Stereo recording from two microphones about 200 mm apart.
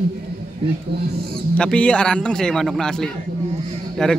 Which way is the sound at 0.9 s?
55° right (ahead or behind).